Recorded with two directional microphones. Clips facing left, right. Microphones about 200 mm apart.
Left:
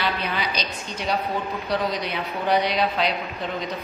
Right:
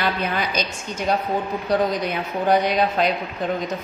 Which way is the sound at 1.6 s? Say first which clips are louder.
Right 6 dB; 50° right (ahead or behind).